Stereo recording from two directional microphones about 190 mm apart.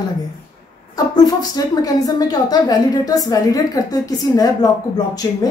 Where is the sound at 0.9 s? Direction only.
20° left (ahead or behind).